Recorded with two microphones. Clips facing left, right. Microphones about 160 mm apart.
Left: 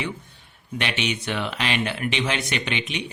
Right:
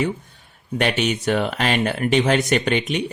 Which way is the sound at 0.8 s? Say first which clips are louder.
Right 6 dB; 45° right (ahead or behind).